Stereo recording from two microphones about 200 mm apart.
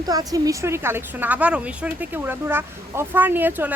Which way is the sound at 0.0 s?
20° right (ahead or behind).